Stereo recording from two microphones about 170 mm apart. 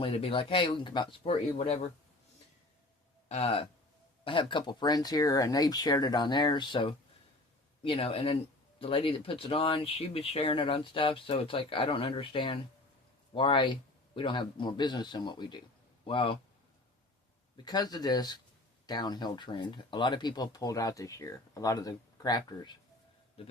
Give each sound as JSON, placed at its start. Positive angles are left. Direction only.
{"t": 0.0, "sound": "speech", "side_deg": 35}
{"t": 3.2, "sound": "speech", "side_deg": 40}
{"t": 17.6, "sound": "speech", "side_deg": 25}
{"t": 23.4, "sound": "a man's voice", "side_deg": 35}